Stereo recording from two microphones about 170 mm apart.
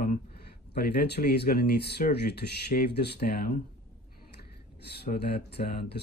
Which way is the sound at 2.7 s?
65° left (ahead or behind).